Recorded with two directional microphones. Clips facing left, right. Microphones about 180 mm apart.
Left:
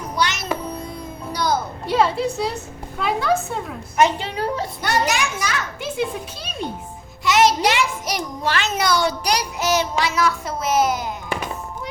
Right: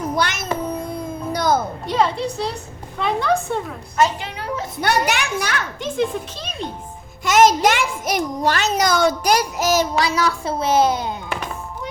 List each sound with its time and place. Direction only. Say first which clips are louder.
0.2 s music: right 1 dB; 50° right (ahead or behind)
1.3 s a sound: right 3 dB; 50° right (ahead or behind)
1.9 s a woman's voice: left 1 dB; 5° left (ahead or behind)
4.2 s a woman's voice: left 3 dB; 35° left (ahead or behind)
4.8 s a child's voice: right 2 dB; 65° right (ahead or behind)
5.8 s a child's voice: right 4 dB; 10° left (ahead or behind)
7.3 s a child's voice: right 3 dB; 45° right (ahead or behind); by 11.1 s 30° right (ahead or behind)